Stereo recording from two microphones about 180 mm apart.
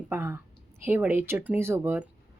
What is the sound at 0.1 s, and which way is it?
A woman's voice, 15° right (ahead or behind).